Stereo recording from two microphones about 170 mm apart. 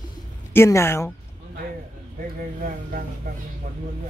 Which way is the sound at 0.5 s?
15° left (ahead or behind).